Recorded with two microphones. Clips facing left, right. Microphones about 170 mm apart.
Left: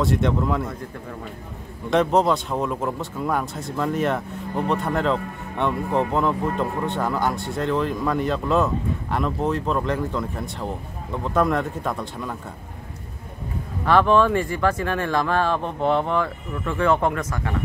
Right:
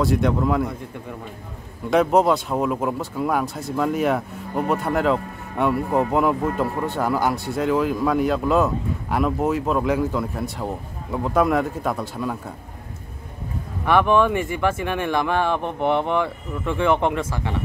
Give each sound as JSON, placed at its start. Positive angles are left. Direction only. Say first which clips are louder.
{"t": 0.0, "sound": "speech", "louder": "right 2 dB", "side_deg": 0}
{"t": 1.9, "sound": "speech", "louder": "right 2 dB", "side_deg": -5}
{"t": 13.8, "sound": "speech", "louder": "even", "side_deg": -15}